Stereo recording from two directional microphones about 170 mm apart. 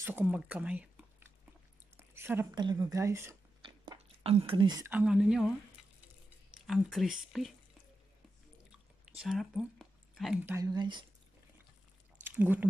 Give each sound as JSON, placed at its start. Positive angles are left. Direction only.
{"t": 0.0, "sound": "speech", "side_deg": -10}
{"t": 2.0, "sound": "a sound", "side_deg": -15}
{"t": 2.5, "sound": "speech", "side_deg": -25}
{"t": 3.6, "sound": "chewing", "side_deg": -30}
{"t": 4.8, "sound": "speech", "side_deg": -5}
{"t": 6.7, "sound": "speech", "side_deg": 0}
{"t": 9.0, "sound": "a sound", "side_deg": -5}
{"t": 10.4, "sound": "speech", "side_deg": -20}
{"t": 12.3, "sound": "speech", "side_deg": -10}